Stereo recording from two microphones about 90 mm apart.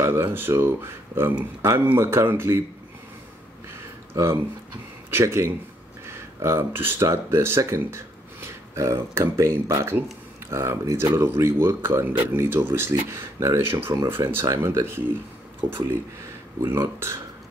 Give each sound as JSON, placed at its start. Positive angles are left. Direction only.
{"t": 0.0, "sound": "speech", "side_deg": -25}
{"t": 4.1, "sound": "speech", "side_deg": -30}